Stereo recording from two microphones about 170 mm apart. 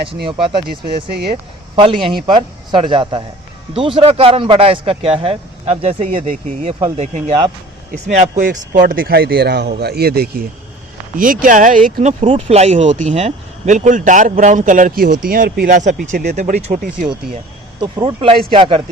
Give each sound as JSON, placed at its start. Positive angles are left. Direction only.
{"t": 0.3, "sound": "a man's voice", "side_deg": -30}
{"t": 6.2, "sound": "speech", "side_deg": -45}
{"t": 6.7, "sound": "a man's voice", "side_deg": -30}
{"t": 8.0, "sound": "speech", "side_deg": -50}
{"t": 8.9, "sound": "speech", "side_deg": -60}
{"t": 11.2, "sound": "speech", "side_deg": -50}
{"t": 18.0, "sound": "a man's voice", "side_deg": -30}